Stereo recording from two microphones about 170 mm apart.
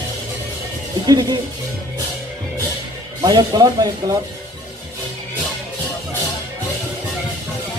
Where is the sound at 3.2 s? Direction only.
25° right (ahead or behind).